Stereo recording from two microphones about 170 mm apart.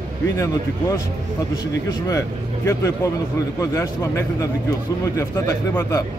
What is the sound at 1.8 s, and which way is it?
Speech, 20° left (ahead or behind).